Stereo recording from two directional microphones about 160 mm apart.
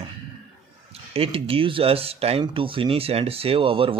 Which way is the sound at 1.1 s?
35° right (ahead or behind).